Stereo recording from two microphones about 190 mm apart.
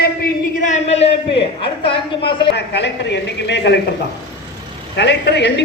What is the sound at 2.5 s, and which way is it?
A man's voice, 65° left (ahead or behind).